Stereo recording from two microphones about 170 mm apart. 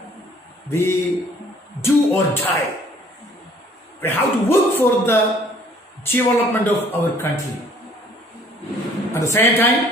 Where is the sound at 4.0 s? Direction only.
10° left (ahead or behind).